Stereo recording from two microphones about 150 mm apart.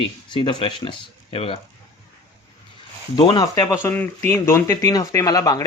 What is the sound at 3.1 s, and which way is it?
Speech, 30° left (ahead or behind).